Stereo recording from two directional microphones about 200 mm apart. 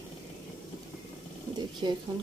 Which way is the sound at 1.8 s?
25° right (ahead or behind).